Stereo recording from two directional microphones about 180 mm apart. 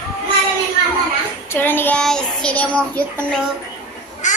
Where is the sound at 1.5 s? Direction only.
10° left (ahead or behind).